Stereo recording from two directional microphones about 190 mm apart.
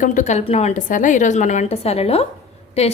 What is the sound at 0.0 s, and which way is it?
Speech, 40° left (ahead or behind).